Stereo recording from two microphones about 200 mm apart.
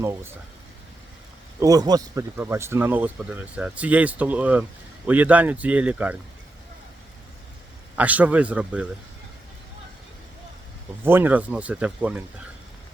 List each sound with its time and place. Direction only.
1.5 s speech: 15° right (ahead or behind)
7.9 s speech: 5° right (ahead or behind)
11.0 s speech: 10° right (ahead or behind)